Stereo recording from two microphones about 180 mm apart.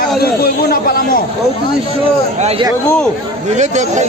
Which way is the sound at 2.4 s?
35° right (ahead or behind).